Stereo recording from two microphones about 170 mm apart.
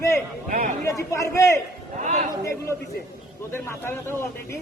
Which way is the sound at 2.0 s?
45° right (ahead or behind).